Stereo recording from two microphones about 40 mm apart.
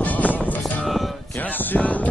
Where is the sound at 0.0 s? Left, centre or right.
Left.